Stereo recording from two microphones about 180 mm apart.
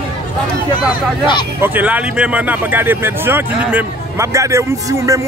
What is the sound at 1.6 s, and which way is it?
Speech, 10° right (ahead or behind).